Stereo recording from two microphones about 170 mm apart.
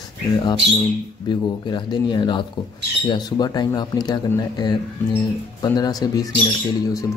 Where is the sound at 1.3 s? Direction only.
25° left (ahead or behind).